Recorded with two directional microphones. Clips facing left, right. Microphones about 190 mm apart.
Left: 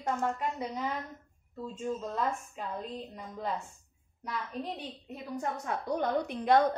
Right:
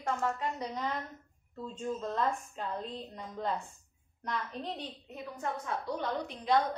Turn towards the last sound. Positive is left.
turn(degrees=55)  # may be behind; listen again after turning